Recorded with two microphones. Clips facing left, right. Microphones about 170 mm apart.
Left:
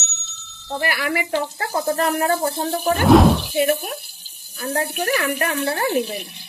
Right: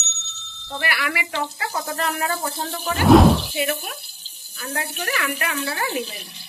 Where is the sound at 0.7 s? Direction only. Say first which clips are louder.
Left 4 dB; 40° left (ahead or behind).